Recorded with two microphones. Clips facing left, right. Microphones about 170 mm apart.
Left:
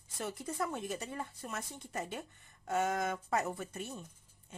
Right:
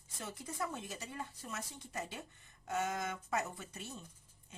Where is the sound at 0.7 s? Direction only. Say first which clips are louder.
Left 6 dB; 55° left (ahead or behind).